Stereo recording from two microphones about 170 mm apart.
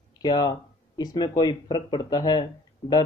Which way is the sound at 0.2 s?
25° left (ahead or behind).